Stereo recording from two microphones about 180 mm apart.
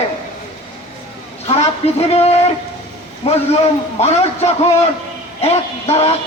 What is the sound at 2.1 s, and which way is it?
Music, 35° left (ahead or behind).